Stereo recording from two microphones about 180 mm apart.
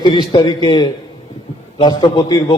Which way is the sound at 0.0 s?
25° left (ahead or behind).